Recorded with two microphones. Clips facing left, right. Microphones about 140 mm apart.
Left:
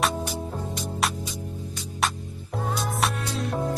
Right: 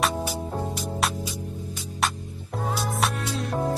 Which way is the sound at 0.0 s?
5° right (ahead or behind).